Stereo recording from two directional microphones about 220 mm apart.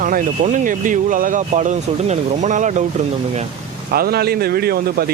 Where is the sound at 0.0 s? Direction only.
35° right (ahead or behind).